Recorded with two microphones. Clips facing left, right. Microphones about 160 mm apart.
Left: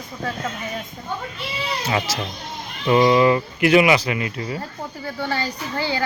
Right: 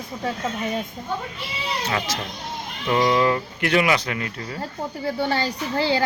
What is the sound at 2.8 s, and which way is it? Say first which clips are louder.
Speech: left 4 dB; 10° left (ahead or behind).